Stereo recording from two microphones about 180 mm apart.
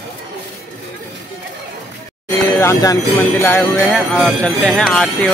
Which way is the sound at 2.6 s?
15° left (ahead or behind).